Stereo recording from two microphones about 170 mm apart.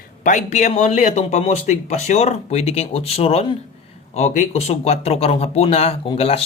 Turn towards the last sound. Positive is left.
turn(degrees=35)  # may be behind; listen again after turning